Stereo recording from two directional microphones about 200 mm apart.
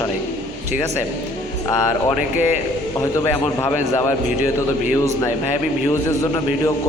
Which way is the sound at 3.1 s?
15° left (ahead or behind).